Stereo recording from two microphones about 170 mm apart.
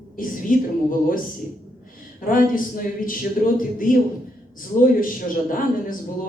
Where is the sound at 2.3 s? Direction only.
55° left (ahead or behind).